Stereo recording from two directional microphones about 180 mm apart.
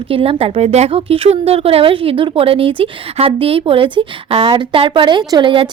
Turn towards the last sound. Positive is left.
turn(degrees=-30)  # may be behind; listen again after turning